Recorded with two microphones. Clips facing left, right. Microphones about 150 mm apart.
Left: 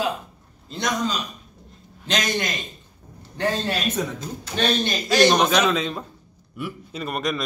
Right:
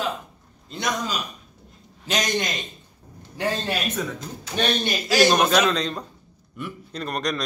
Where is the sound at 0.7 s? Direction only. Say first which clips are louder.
Left 2 dB; centre (ahead or behind).